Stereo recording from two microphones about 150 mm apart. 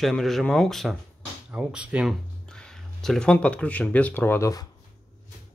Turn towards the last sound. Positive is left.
turn(degrees=20)  # may be behind; listen again after turning